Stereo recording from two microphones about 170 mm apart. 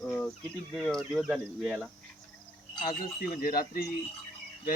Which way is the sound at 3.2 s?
65° left (ahead or behind).